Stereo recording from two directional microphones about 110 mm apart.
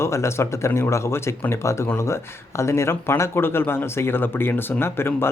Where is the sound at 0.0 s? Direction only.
25° left (ahead or behind).